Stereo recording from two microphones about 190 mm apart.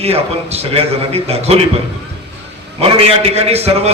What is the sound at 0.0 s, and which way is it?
A man's voice, 35° right (ahead or behind).